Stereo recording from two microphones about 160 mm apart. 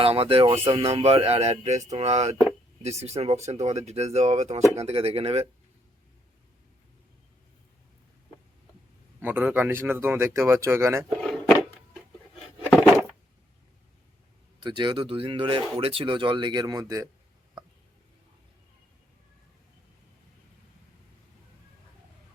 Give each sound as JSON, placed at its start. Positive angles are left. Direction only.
{"t": 0.0, "sound": "speech", "side_deg": -35}
{"t": 9.2, "sound": "speech", "side_deg": -10}
{"t": 11.2, "sound": "chopping", "side_deg": 5}
{"t": 14.6, "sound": "speech", "side_deg": -30}